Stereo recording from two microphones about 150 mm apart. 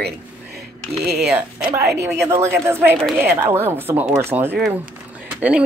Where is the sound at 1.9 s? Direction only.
20° right (ahead or behind).